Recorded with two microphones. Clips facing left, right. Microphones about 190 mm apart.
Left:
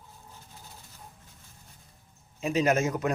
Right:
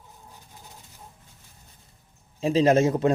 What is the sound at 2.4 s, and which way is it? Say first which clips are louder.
Speech: right 6 dB; 30° right (ahead or behind).